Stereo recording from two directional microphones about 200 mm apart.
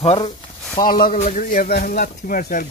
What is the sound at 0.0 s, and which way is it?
Speech, 30° left (ahead or behind).